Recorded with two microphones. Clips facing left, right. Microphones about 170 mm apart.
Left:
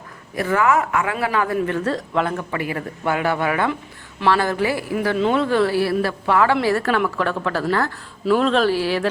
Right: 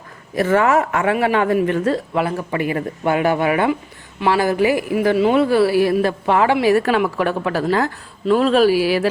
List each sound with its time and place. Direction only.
0.3 s a man's voice: 25° right (ahead or behind)
1.5 s a woman's voice: 15° right (ahead or behind)
2.5 s a man's voice: 25° right (ahead or behind)
8.2 s a woman's voice: centre (ahead or behind)